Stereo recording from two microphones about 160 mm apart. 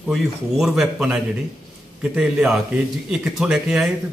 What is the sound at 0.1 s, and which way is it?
A man's voice, centre (ahead or behind).